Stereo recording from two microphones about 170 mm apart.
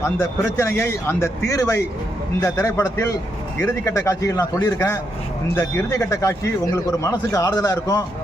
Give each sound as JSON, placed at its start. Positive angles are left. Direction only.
{"t": 0.0, "sound": "a man's voice", "side_deg": 15}